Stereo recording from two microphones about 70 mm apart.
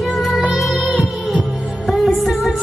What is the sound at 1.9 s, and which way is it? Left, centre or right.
Music, centre.